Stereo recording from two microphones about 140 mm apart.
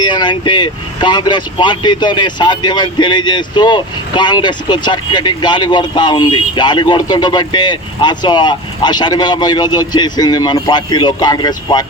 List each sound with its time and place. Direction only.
0.0 s speech: 30° left (ahead or behind)